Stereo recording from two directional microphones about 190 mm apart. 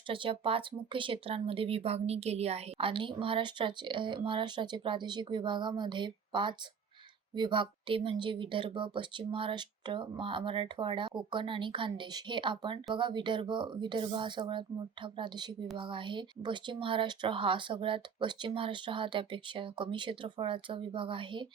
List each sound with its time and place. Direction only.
0.1 s speech: 30° right (ahead or behind)